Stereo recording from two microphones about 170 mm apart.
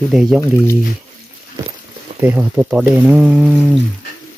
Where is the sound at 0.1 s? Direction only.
5° right (ahead or behind).